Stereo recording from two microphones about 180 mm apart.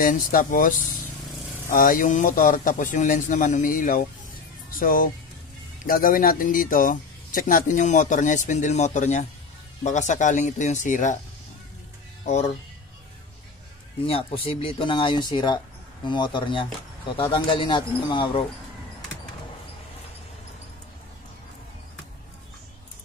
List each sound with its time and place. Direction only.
0.0 s speech: 50° left (ahead or behind)
12.3 s speech: 40° left (ahead or behind)
14.0 s speech: 30° left (ahead or behind)